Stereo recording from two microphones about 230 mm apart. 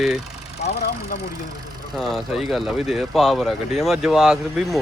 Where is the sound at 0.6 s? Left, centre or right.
Left.